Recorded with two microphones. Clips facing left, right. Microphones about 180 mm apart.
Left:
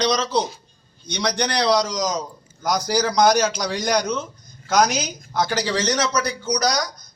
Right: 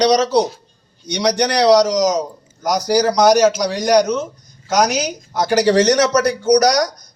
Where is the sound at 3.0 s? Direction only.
40° right (ahead or behind).